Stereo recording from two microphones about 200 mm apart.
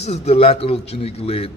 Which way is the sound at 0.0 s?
30° left (ahead or behind).